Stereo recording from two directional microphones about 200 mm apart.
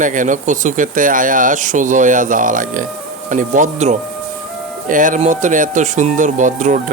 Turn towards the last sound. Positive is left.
turn(degrees=-40)  # may be behind; listen again after turning